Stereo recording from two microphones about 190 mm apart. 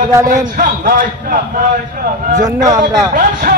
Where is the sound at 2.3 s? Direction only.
40° right (ahead or behind).